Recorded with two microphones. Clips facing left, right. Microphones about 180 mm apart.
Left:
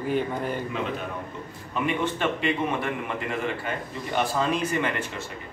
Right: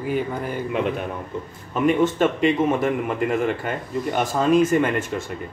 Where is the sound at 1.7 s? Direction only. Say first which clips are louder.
Right 8 dB; 45° right (ahead or behind).